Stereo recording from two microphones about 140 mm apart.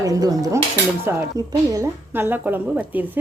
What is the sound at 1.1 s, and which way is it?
A woman's voice, 15° right (ahead or behind).